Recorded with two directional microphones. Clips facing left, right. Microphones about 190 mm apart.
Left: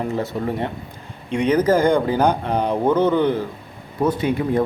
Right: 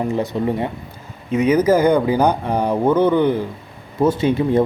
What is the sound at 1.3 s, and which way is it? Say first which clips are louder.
A man's voice: right 2 dB; 5° right (ahead or behind).